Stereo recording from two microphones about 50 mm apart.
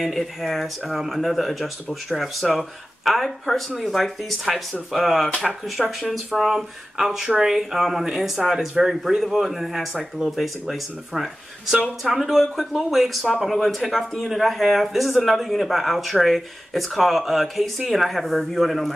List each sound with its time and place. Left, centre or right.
0.0 s speech: centre